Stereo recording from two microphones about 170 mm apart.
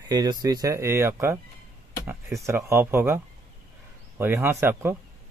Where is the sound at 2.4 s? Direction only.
15° right (ahead or behind).